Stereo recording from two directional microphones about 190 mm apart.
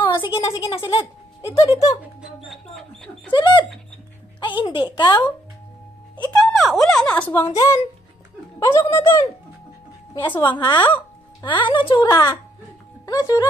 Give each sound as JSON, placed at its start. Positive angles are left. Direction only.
{"t": 0.0, "sound": "a sound", "side_deg": 25}
{"t": 0.6, "sound": "a woman's voice", "side_deg": 25}
{"t": 2.4, "sound": "speech", "side_deg": 0}
{"t": 3.3, "sound": "a woman's voice", "side_deg": 25}
{"t": 6.3, "sound": "speech", "side_deg": 0}
{"t": 8.5, "sound": "speech", "side_deg": 15}
{"t": 10.1, "sound": "a woman's voice", "side_deg": 25}